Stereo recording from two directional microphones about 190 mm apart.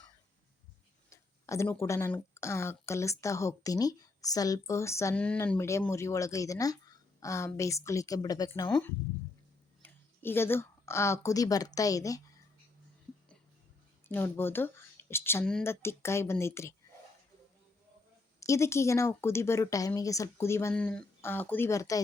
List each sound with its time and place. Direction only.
1.1 s speech: 15° left (ahead or behind)
9.8 s speech: 10° left (ahead or behind)
14.1 s speech: 10° left (ahead or behind)
18.3 s speech: 15° left (ahead or behind)